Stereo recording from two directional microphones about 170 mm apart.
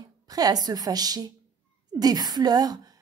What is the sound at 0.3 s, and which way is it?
A woman's voice, 20° right (ahead or behind).